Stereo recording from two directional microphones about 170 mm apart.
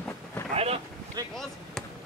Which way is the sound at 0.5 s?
35° right (ahead or behind).